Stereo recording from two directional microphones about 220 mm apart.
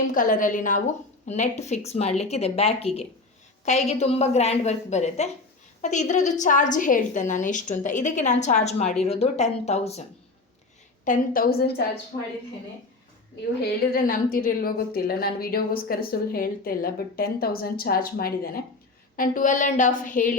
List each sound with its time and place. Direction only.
0.1 s a woman's voice: 40° left (ahead or behind)
11.0 s a woman's voice: 40° left (ahead or behind)
13.6 s a woman's voice: 45° left (ahead or behind)